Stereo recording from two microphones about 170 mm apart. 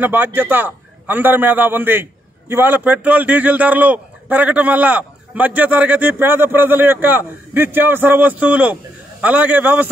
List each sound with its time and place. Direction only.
0.0 s a man's voice: 10° right (ahead or behind)